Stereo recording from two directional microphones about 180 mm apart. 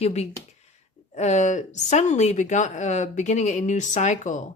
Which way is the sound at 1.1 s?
40° left (ahead or behind).